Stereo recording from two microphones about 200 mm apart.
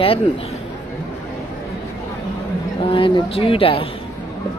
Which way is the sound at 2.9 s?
25° left (ahead or behind).